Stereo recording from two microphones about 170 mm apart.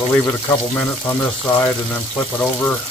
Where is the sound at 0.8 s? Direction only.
10° left (ahead or behind).